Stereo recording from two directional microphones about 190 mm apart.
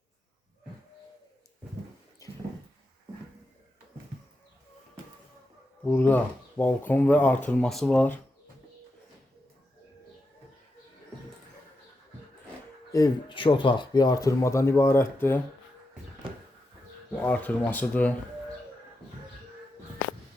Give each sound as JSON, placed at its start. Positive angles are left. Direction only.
{"t": 5.8, "sound": "speech", "side_deg": 10}
{"t": 12.9, "sound": "speech", "side_deg": 20}
{"t": 17.1, "sound": "speech", "side_deg": 10}